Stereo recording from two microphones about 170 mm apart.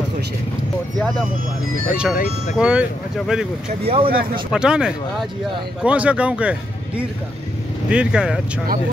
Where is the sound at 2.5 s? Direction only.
5° right (ahead or behind).